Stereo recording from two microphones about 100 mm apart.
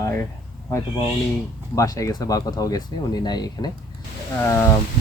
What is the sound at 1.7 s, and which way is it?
Speech, 35° left (ahead or behind).